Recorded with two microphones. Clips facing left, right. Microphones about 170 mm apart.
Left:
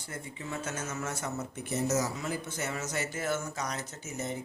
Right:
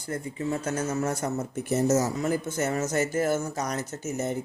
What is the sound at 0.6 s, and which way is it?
Speech, 35° right (ahead or behind).